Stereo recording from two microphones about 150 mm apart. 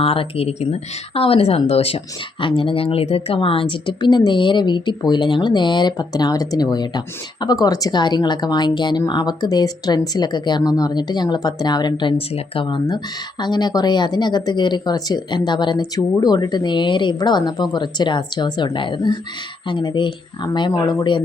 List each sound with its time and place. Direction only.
0.0 s speech: 40° left (ahead or behind)